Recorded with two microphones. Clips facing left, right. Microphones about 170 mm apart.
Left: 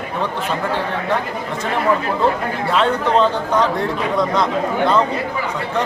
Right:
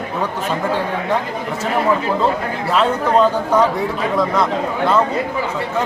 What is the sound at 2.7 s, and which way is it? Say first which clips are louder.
A man's voice: right 1 dB; 5° right (ahead or behind).